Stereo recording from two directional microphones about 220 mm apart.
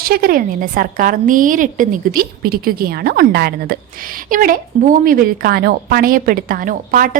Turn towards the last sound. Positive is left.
turn(degrees=-40)  # may be behind; listen again after turning